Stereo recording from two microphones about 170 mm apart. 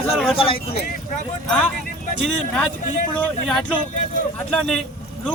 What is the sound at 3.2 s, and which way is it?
A man's voice, 5° left (ahead or behind).